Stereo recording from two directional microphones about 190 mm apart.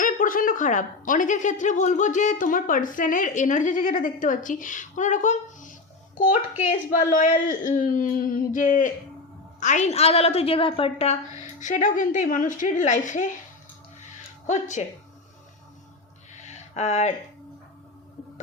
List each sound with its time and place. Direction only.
0.0 s a woman's voice: 45° left (ahead or behind)
14.4 s a woman's voice: 40° left (ahead or behind)
16.3 s a sound: 40° left (ahead or behind)